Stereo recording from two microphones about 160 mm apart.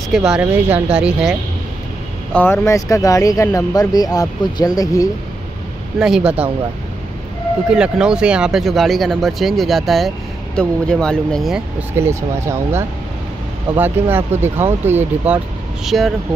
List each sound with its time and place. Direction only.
0.1 s speech: 5° right (ahead or behind)
2.3 s speech: 15° left (ahead or behind)
5.9 s speech: 5° right (ahead or behind)
7.7 s speech: 5° right (ahead or behind)
12.0 s speech: 15° right (ahead or behind); by 16.1 s centre (ahead or behind)